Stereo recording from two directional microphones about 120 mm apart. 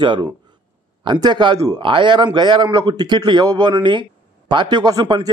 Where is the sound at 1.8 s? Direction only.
45° right (ahead or behind).